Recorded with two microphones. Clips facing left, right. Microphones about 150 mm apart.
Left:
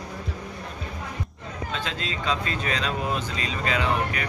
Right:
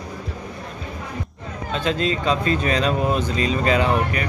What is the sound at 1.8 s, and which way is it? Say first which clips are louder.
Speech: right 10 dB; 45° right (ahead or behind).